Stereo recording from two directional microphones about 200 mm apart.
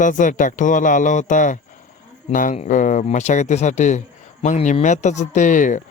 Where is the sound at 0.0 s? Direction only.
40° left (ahead or behind).